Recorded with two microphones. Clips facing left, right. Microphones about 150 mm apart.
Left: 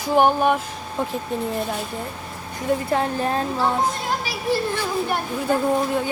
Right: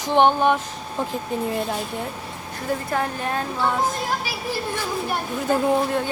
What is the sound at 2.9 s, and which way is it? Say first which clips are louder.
Speech: left 3 dB; 30° left (ahead or behind).